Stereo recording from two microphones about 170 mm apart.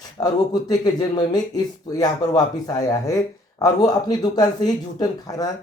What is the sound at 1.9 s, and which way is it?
Speech, 20° left (ahead or behind).